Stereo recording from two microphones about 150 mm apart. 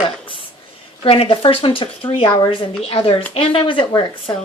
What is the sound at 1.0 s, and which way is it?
A woman's voice, 40° left (ahead or behind).